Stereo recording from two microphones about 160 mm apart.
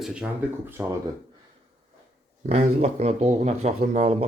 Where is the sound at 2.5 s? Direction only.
40° right (ahead or behind).